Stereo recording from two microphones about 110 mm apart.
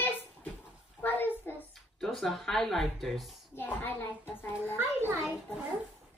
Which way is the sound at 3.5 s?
20° left (ahead or behind).